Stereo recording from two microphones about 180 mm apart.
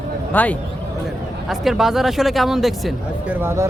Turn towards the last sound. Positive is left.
turn(degrees=-15)  # may be behind; listen again after turning